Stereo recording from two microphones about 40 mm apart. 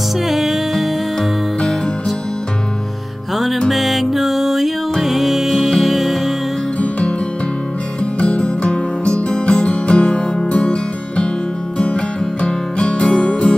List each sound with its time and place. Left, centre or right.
0.3 s music: centre
3.7 s music: centre
6.8 s music: left